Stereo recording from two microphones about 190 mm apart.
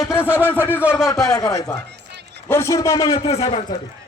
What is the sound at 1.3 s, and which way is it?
A man's voice, 20° left (ahead or behind).